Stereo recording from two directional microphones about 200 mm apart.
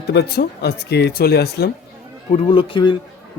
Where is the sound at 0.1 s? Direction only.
55° left (ahead or behind).